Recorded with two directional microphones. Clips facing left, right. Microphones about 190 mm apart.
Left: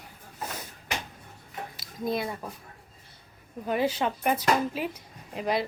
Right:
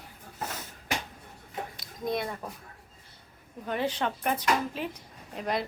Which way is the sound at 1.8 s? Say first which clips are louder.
Left 2 dB; 5° left (ahead or behind).